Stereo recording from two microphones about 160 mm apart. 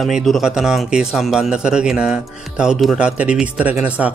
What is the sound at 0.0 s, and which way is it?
A man's voice, centre (ahead or behind).